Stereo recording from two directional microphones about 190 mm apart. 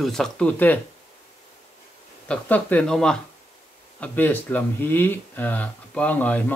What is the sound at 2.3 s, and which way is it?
Speech, 5° left (ahead or behind).